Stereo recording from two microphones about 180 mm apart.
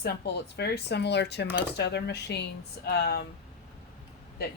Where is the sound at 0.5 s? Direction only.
65° left (ahead or behind).